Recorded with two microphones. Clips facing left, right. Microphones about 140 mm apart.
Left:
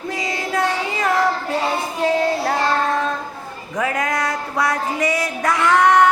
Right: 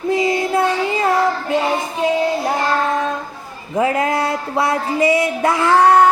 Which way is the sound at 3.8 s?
25° right (ahead or behind).